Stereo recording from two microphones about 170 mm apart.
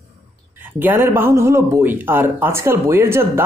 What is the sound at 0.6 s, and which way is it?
Speech, 10° right (ahead or behind).